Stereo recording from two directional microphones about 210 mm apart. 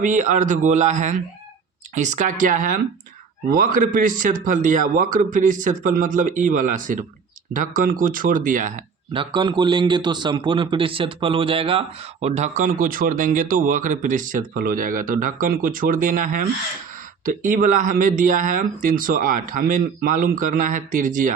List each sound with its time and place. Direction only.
0.0 s a man's voice: 35° right (ahead or behind)
9.1 s a man's voice: 20° right (ahead or behind); by 21.3 s 40° right (ahead or behind)